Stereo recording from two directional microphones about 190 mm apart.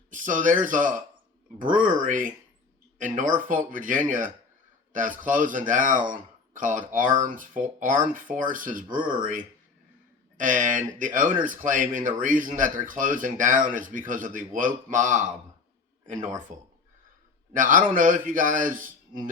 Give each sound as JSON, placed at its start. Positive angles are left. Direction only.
{"t": 0.1, "sound": "speech", "side_deg": -45}